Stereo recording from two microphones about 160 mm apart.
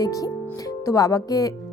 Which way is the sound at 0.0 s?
20° left (ahead or behind).